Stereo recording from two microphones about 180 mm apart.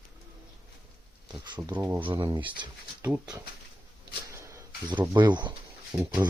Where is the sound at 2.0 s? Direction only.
25° right (ahead or behind).